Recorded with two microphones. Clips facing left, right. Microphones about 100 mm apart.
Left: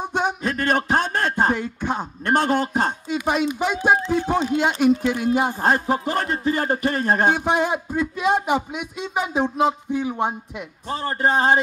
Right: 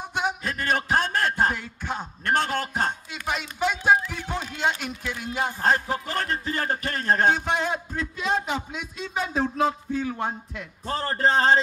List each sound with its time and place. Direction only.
0.7 s music: 20° left (ahead or behind)
2.2 s speech: 15° left (ahead or behind)